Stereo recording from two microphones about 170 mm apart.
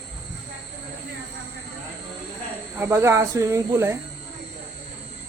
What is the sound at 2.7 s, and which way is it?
Speech, 15° right (ahead or behind).